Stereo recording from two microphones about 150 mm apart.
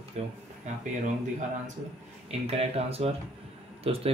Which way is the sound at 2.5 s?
40° right (ahead or behind).